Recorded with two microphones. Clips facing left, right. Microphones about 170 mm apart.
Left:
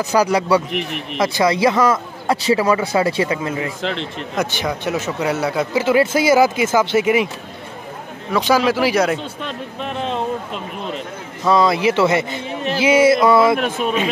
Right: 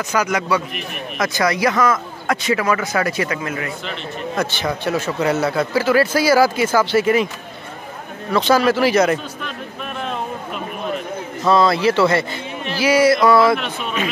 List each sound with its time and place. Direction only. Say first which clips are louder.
0.0 s speech: left 4 dB; 35° left (ahead or behind)
0.7 s a man's voice: left 6 dB; 75° left (ahead or behind)
1.1 s speech: left 3 dB; 25° left (ahead or behind)
3.8 s speech: left 3 dB; 90° left
4.4 s speech: left 1 dB; 15° left (ahead or behind)
8.3 s a man's voice: right 1 dB; 10° left (ahead or behind)
9.4 s speech: left 3 dB; 25° left (ahead or behind)
11.4 s a man's voice: even; 15° left (ahead or behind)
13.6 s speech: left 6 dB; 45° left (ahead or behind)